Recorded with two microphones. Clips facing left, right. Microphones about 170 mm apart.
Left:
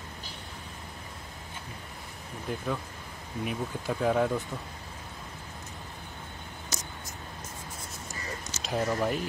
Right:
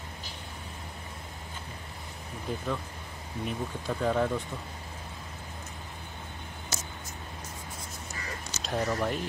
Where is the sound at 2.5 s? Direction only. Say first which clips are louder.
Even; centre (ahead or behind).